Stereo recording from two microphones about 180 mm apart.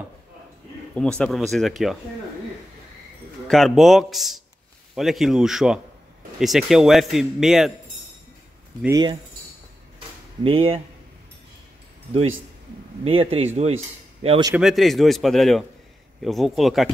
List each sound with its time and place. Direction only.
0.9 s speech: 5° left (ahead or behind)
3.4 s speech: centre (ahead or behind)
8.8 s speech: 20° right (ahead or behind)
10.4 s a man's voice: 30° right (ahead or behind)
12.1 s a man's voice: 35° right (ahead or behind)
14.5 s speech: centre (ahead or behind)